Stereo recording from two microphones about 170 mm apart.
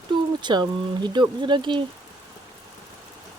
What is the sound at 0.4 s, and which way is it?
Speech, 25° right (ahead or behind).